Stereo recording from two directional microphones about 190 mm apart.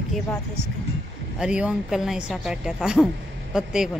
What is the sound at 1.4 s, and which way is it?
A woman's voice, 5° right (ahead or behind).